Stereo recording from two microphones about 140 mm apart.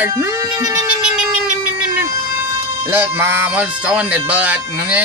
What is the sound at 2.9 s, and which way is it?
Speech, 15° right (ahead or behind).